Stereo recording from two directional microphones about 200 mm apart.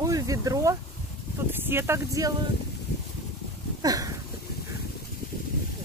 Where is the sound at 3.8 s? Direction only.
20° right (ahead or behind).